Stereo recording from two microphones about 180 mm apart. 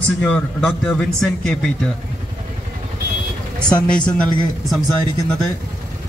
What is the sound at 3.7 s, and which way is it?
Speech, 25° left (ahead or behind).